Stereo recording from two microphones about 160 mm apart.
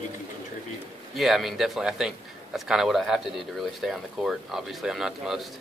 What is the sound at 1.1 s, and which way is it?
Speech, centre (ahead or behind).